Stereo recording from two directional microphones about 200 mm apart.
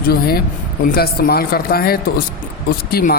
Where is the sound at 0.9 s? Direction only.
50° left (ahead or behind).